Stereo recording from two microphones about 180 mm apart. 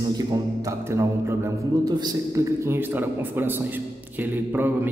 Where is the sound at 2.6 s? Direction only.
10° right (ahead or behind).